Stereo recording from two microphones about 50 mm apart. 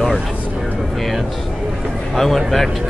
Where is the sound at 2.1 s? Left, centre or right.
Centre.